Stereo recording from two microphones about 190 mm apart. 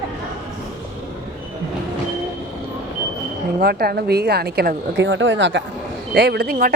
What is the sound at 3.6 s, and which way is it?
Speech, 55° right (ahead or behind).